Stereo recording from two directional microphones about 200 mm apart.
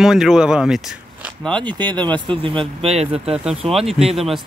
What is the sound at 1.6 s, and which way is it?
Speech, 20° right (ahead or behind).